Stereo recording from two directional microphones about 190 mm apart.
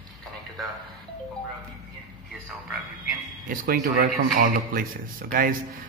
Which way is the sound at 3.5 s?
50° right (ahead or behind).